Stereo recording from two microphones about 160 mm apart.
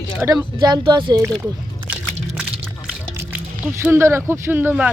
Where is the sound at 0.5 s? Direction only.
30° right (ahead or behind).